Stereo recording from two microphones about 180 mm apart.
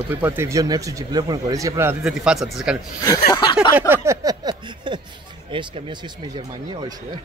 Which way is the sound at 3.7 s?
10° right (ahead or behind).